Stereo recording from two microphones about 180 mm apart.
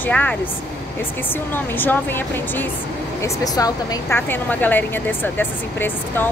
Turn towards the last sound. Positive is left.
turn(degrees=10)  # may be behind; listen again after turning